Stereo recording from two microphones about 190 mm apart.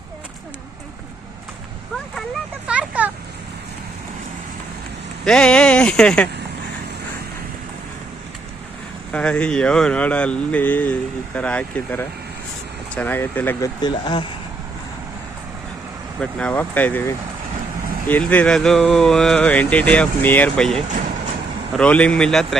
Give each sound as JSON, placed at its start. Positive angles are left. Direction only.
{"t": 2.6, "sound": "a sound", "side_deg": -5}
{"t": 5.2, "sound": "speech", "side_deg": 5}
{"t": 9.1, "sound": "speech", "side_deg": 5}
{"t": 13.8, "sound": "speech", "side_deg": 25}
{"t": 16.2, "sound": "speech", "side_deg": 5}
{"t": 21.8, "sound": "speech", "side_deg": 5}